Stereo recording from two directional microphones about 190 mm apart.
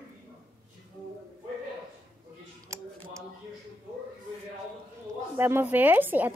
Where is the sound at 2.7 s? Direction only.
15° right (ahead or behind).